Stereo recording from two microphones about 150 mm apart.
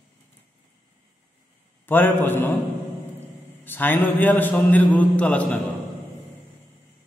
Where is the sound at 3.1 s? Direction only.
15° left (ahead or behind).